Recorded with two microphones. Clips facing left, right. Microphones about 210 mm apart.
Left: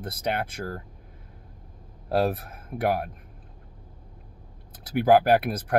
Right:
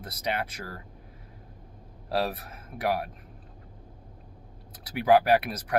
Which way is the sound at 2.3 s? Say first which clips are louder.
Left 6 dB; 55° left (ahead or behind).